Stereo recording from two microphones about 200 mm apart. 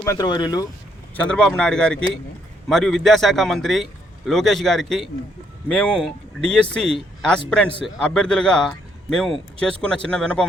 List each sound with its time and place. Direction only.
0.0 s speech: 15° left (ahead or behind)
1.1 s a man's voice: 5° left (ahead or behind)